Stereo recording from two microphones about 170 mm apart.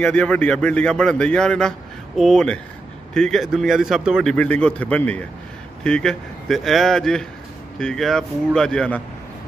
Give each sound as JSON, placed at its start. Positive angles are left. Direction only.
{"t": 0.0, "sound": "a man's voice", "side_deg": 5}